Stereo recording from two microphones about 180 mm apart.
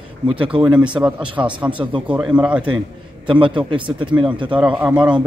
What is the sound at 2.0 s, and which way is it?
Speech, 5° right (ahead or behind).